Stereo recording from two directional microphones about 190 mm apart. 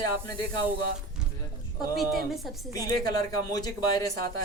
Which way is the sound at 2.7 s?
20° left (ahead or behind).